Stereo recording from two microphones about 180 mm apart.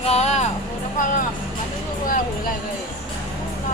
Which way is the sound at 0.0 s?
35° left (ahead or behind).